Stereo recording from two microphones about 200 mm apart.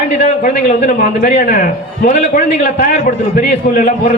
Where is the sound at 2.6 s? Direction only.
45° left (ahead or behind).